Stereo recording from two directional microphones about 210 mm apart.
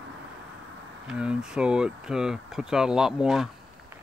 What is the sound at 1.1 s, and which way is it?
Speech, 5° right (ahead or behind).